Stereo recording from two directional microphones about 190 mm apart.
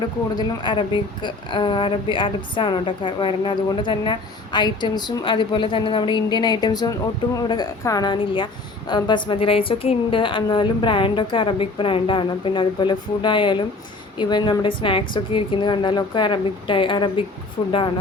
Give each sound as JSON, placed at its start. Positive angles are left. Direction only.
{"t": 0.3, "sound": "speech", "side_deg": 25}